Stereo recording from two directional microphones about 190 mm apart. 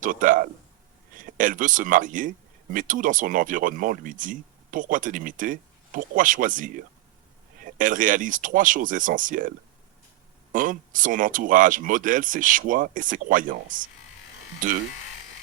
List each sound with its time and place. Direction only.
0.0 s speech: 45° right (ahead or behind)
10.5 s speech: 45° right (ahead or behind)